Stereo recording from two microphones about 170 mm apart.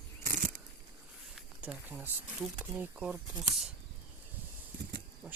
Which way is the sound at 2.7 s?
10° right (ahead or behind).